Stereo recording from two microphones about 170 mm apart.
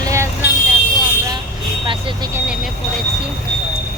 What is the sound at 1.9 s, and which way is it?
Speech, 30° right (ahead or behind).